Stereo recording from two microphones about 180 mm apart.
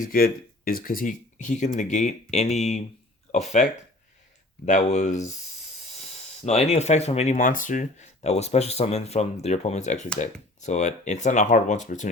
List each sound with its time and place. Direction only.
0.0 s speech: 55° left (ahead or behind)
6.4 s speech: 35° left (ahead or behind)